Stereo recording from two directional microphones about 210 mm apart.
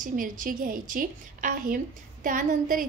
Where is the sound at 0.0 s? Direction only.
40° right (ahead or behind).